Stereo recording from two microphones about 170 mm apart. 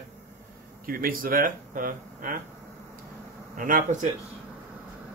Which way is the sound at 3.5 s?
50° right (ahead or behind).